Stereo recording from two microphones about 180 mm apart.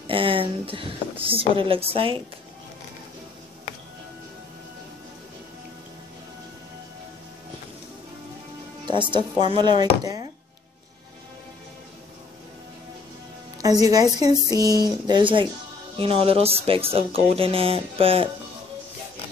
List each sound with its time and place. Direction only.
0.0 s a sound: 30° right (ahead or behind)
1.2 s speech: 30° right (ahead or behind)
8.8 s speech: 25° right (ahead or behind)
13.8 s speech: 20° right (ahead or behind)